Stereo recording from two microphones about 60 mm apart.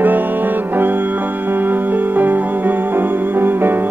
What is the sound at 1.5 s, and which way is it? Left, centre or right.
Music, right.